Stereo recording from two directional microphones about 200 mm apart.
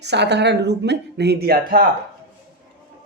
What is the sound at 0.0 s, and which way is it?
A woman's voice, 60° right (ahead or behind).